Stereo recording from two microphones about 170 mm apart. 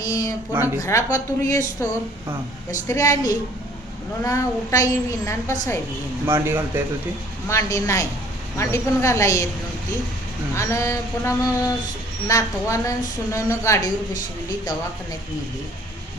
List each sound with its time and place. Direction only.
0.0 s a woman's voice: 20° left (ahead or behind)
2.8 s a woman's voice: 20° left (ahead or behind)
6.2 s a man's voice: 15° right (ahead or behind)
7.4 s a woman's voice: 15° left (ahead or behind)
10.5 s a woman's voice: 15° left (ahead or behind)